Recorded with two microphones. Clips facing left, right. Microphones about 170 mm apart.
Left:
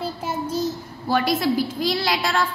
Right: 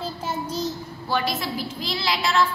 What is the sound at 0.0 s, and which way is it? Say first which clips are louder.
Child singing: left 2 dB; 10° left (ahead or behind).